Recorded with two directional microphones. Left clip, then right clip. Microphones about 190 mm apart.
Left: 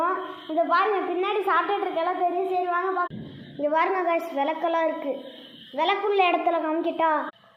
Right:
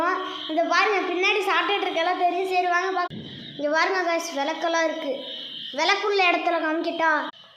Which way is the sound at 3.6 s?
Centre (ahead or behind).